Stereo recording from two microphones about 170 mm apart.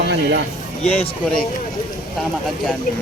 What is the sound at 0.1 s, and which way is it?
Speech, 90° right.